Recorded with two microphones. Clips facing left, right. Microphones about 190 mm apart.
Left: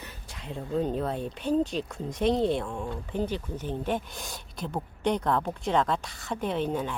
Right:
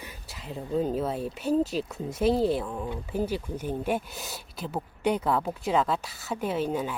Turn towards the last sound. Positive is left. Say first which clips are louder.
# right 1 dB
turn(degrees=-5)  # may be behind; listen again after turning